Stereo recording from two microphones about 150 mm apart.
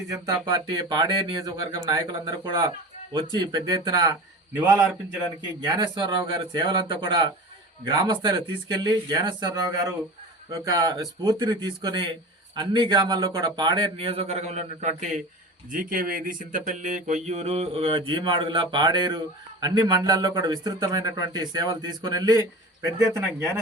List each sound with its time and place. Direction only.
0.1 s speech: 25° right (ahead or behind)
5.6 s mantra: 30° right (ahead or behind)
7.9 s speech: 30° right (ahead or behind)
10.5 s speech: 25° right (ahead or behind)
12.5 s mantra: 30° right (ahead or behind); by 15.2 s 50° right (ahead or behind)
15.7 s mantra: 70° right (ahead or behind); by 22.9 s 25° right (ahead or behind)